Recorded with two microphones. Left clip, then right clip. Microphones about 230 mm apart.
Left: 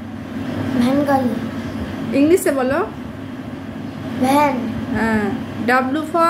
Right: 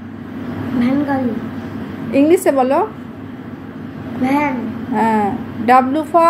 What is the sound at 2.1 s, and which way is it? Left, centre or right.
Speech, centre.